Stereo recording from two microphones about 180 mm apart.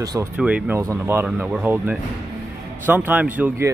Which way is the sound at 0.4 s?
5° right (ahead or behind).